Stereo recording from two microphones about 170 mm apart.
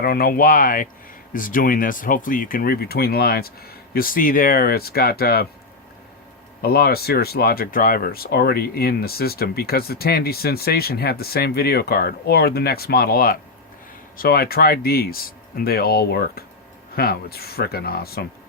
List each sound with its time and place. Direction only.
0.0 s speech: 60° left (ahead or behind)
6.6 s speech: 65° left (ahead or behind)